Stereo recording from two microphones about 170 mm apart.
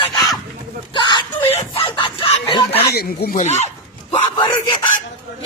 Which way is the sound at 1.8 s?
30° left (ahead or behind).